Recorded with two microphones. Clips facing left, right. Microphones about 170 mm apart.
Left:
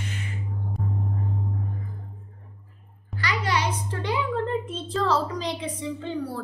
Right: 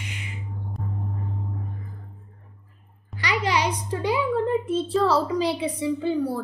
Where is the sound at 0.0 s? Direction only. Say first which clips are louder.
Left 3 dB; 15° right (ahead or behind).